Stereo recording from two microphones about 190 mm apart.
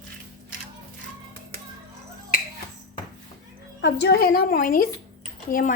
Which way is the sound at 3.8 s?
65° left (ahead or behind).